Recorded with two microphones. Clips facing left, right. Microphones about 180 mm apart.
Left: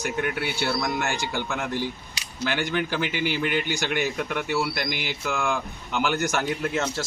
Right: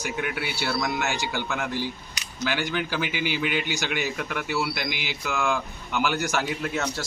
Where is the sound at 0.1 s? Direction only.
5° right (ahead or behind).